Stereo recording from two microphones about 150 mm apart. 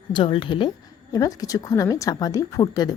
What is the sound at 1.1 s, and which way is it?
A woman's voice, 25° left (ahead or behind).